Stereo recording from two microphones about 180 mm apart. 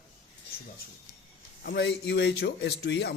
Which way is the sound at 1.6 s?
65° left (ahead or behind).